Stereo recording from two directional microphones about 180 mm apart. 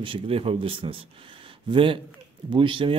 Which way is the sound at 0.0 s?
30° right (ahead or behind).